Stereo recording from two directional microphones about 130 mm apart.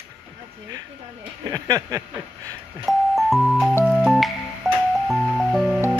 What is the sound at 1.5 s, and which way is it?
Speech, 30° right (ahead or behind).